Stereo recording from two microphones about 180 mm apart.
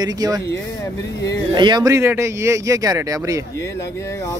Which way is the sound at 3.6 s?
15° left (ahead or behind).